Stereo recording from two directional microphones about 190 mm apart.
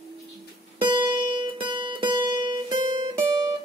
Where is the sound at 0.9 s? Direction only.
25° right (ahead or behind).